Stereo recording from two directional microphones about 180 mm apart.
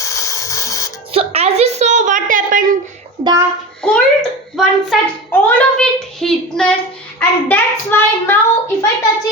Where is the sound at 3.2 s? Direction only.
20° right (ahead or behind).